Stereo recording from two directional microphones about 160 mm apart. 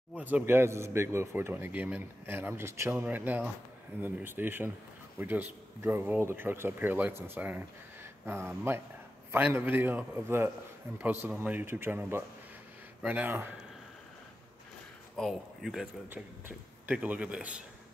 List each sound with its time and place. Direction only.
0.2 s a man's voice: 10° right (ahead or behind)
15.1 s speech: centre (ahead or behind)
16.1 s a man's voice: 10° right (ahead or behind)